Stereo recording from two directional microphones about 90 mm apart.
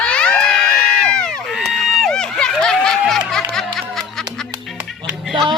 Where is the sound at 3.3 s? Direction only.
5° left (ahead or behind).